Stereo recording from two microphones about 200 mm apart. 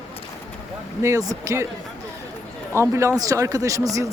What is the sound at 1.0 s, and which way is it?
Speech, 15° right (ahead or behind).